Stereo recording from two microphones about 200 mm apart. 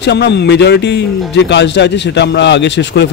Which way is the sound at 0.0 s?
55° left (ahead or behind).